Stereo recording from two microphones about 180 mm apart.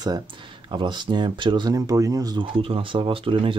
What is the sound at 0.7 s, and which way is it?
Speech, 25° right (ahead or behind).